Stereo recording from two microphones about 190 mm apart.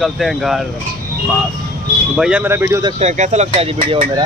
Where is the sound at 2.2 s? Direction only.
5° right (ahead or behind).